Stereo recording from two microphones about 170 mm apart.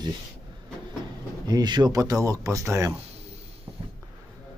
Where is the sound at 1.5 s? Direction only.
25° right (ahead or behind).